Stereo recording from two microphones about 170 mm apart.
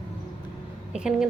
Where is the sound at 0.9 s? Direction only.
5° right (ahead or behind).